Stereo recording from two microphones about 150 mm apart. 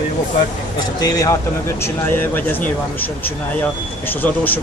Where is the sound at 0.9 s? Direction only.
25° left (ahead or behind).